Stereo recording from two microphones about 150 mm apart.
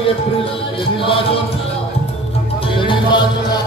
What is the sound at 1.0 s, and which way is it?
Music, 35° left (ahead or behind).